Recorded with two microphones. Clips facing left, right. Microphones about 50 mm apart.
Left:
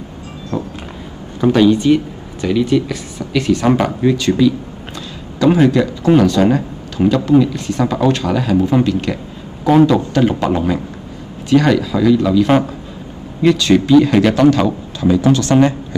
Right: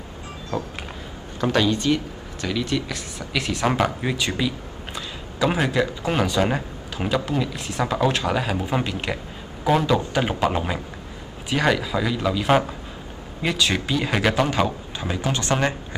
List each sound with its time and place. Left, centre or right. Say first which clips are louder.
1.4 s speech: left 9 dB; centre
4.0 s a man's voice: left 11 dB; centre
15.5 s speech: left 10 dB; centre